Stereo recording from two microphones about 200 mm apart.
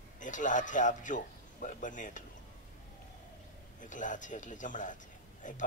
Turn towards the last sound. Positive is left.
turn(degrees=40)  # may be behind; listen again after turning